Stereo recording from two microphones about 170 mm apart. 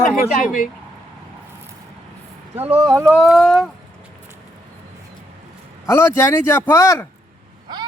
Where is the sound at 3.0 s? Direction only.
Centre (ahead or behind).